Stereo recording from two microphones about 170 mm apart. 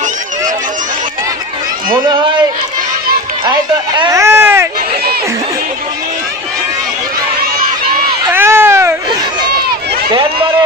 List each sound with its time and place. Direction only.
2.0 s speech: 25° right (ahead or behind)
3.4 s speech: 25° right (ahead or behind)
4.2 s a sound: 15° right (ahead or behind)
8.3 s baby cry: 15° right (ahead or behind)
10.1 s run: 30° right (ahead or behind)